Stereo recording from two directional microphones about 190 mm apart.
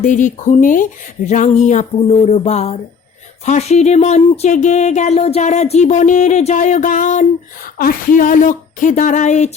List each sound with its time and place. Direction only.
0.0 s speech: 40° left (ahead or behind)
1.3 s a sound: 40° left (ahead or behind)
7.8 s speech: 45° left (ahead or behind)